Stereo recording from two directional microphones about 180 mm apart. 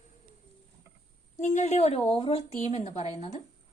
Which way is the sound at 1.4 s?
40° left (ahead or behind).